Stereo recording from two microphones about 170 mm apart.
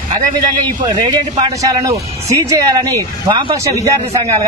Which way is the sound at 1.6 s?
20° right (ahead or behind).